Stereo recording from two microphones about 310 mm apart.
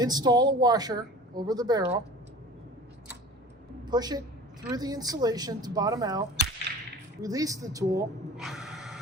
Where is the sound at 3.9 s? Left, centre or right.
Centre.